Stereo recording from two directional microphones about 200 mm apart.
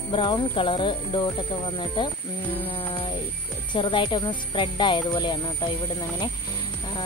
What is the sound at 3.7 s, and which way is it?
Speech, 25° left (ahead or behind).